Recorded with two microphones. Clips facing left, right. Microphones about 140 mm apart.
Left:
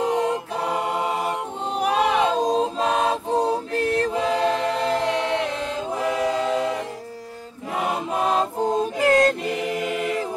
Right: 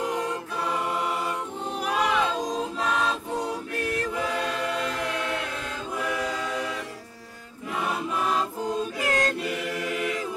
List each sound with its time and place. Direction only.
0.0 s choir: 25° left (ahead or behind)
7.7 s choir: 25° left (ahead or behind)
8.9 s chant: 30° left (ahead or behind)
9.7 s choir: 25° left (ahead or behind)